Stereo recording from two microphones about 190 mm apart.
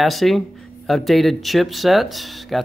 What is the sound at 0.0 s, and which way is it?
Speech, centre (ahead or behind).